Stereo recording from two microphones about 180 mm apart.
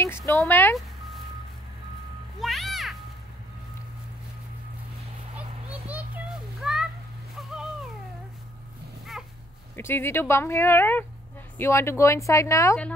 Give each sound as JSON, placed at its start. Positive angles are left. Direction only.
{"t": 0.3, "sound": "speech", "side_deg": 15}
{"t": 2.4, "sound": "music", "side_deg": 0}
{"t": 5.7, "sound": "children playing", "side_deg": -10}
{"t": 7.3, "sound": "a sound", "side_deg": 0}
{"t": 9.8, "sound": "speech", "side_deg": 10}